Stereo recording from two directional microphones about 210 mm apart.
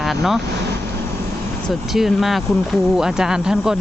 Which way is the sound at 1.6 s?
Centre (ahead or behind).